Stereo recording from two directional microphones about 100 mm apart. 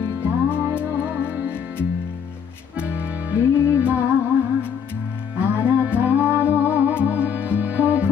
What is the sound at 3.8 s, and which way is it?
Music, 15° right (ahead or behind).